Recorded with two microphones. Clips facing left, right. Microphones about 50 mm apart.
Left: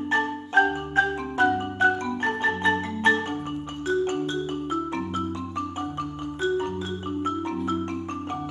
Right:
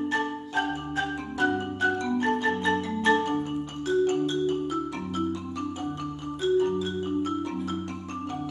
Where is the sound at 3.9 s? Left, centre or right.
Left.